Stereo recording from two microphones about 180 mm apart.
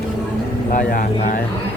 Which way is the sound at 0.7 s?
50° left (ahead or behind).